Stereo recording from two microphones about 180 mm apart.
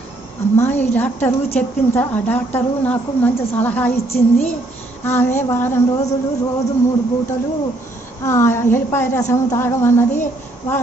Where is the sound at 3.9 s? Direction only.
35° left (ahead or behind).